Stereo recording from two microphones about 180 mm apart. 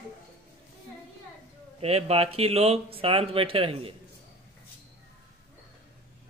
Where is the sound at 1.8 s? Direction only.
35° right (ahead or behind).